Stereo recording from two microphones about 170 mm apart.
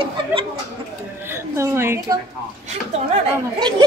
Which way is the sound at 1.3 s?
15° right (ahead or behind).